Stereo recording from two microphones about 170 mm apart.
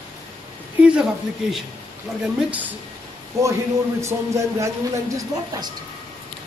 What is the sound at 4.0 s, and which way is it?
Speech, 15° right (ahead or behind).